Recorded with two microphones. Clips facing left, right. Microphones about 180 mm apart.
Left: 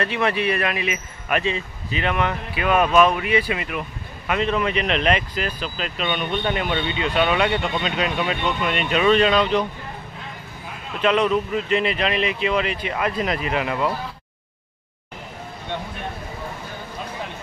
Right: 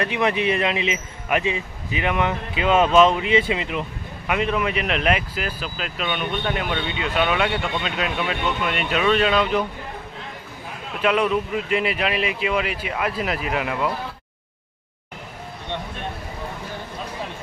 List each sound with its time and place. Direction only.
0.0 s speech: 15° right (ahead or behind)
4.3 s speech: 10° right (ahead or behind)
11.0 s speech: 10° right (ahead or behind)